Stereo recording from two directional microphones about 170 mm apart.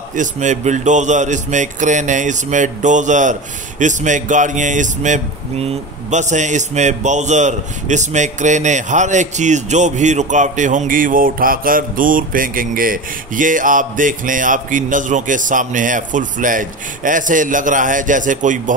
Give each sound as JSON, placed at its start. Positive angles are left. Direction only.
{"t": 0.1, "sound": "speech", "side_deg": -45}